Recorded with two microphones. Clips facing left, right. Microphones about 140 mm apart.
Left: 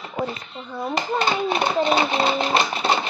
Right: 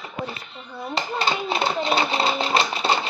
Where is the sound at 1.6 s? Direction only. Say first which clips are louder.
Left 3 dB; 20° left (ahead or behind).